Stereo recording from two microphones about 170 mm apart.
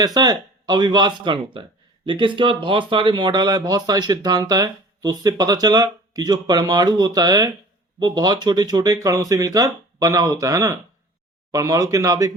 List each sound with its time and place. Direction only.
0.0 s speech: 20° right (ahead or behind)